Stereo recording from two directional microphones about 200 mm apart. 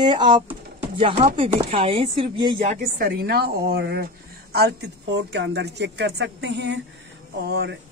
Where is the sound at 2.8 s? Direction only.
50° right (ahead or behind).